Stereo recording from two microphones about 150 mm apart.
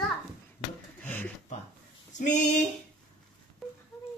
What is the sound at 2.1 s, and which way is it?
Speech, 55° left (ahead or behind).